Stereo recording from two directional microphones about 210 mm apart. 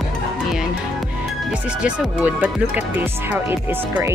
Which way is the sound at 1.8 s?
5° right (ahead or behind).